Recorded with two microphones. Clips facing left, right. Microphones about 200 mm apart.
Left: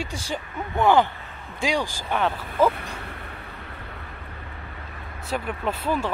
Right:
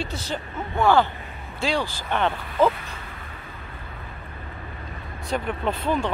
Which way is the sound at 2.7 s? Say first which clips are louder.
Left 3 dB; 60° left (ahead or behind).